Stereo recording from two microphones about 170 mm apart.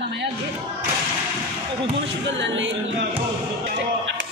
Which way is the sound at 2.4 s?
90° right.